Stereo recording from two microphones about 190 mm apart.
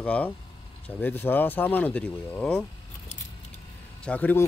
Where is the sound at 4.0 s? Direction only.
10° left (ahead or behind).